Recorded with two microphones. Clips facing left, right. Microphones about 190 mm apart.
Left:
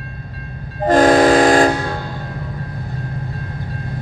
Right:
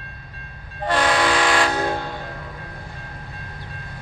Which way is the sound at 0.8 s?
45° left (ahead or behind).